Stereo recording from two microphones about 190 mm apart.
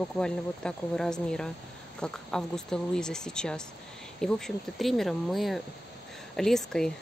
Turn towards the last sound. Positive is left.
turn(degrees=5)  # may be behind; listen again after turning